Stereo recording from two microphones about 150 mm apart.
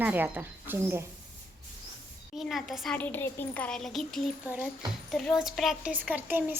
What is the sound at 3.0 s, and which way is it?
A woman's voice, 15° left (ahead or behind).